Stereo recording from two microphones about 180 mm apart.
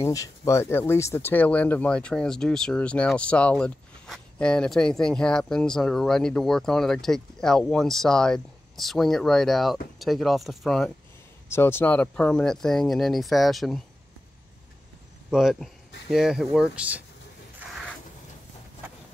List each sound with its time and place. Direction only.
0.0 s speech: 20° left (ahead or behind); by 10.9 s centre (ahead or behind)
11.4 s speech: 15° left (ahead or behind)
15.3 s speech: centre (ahead or behind)